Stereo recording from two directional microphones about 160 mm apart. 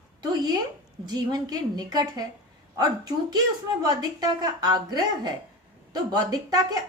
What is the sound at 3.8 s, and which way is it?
A woman's voice, 25° right (ahead or behind).